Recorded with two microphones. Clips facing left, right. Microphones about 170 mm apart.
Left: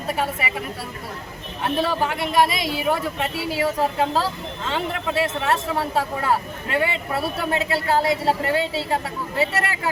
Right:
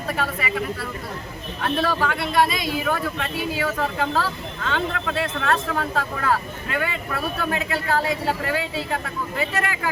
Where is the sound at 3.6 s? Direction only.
25° left (ahead or behind).